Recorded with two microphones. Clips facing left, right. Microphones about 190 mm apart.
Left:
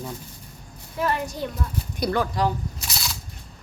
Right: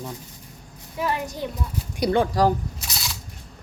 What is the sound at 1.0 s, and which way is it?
A woman's voice, 15° right (ahead or behind).